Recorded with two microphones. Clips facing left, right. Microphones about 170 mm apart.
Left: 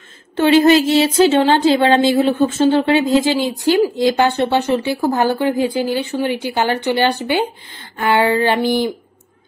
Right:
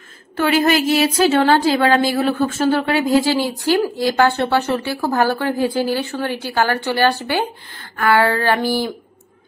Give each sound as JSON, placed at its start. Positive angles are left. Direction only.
{"t": 0.4, "sound": "speech", "side_deg": 25}